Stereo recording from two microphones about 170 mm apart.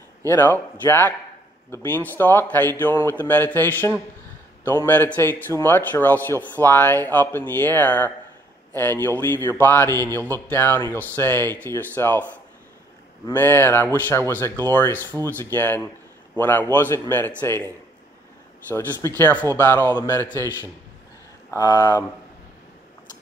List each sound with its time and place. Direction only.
0.3 s a man's voice: 10° left (ahead or behind)
9.2 s a man's voice: 10° left (ahead or behind)
13.3 s a man's voice: 10° left (ahead or behind)
18.7 s a man's voice: 15° left (ahead or behind)